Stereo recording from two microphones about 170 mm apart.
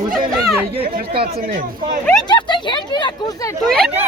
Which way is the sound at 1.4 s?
55° right (ahead or behind).